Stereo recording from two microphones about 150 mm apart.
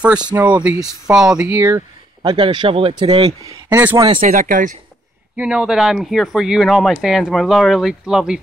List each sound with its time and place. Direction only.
0.0 s speech: 5° right (ahead or behind)
1.5 s speech: 20° right (ahead or behind)
2.3 s speech: 35° right (ahead or behind)
3.7 s speech: 15° right (ahead or behind)
4.2 s speech: 65° right (ahead or behind)
5.4 s speech: 5° right (ahead or behind)